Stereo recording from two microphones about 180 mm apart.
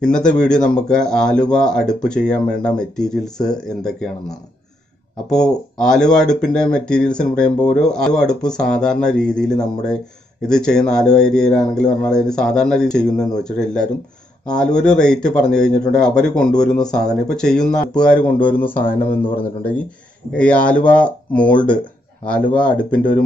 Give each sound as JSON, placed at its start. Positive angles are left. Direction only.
{"t": 0.0, "sound": "speech", "side_deg": 5}
{"t": 5.3, "sound": "speech", "side_deg": 5}
{"t": 18.8, "sound": "speech", "side_deg": 55}
{"t": 20.3, "sound": "speech", "side_deg": 5}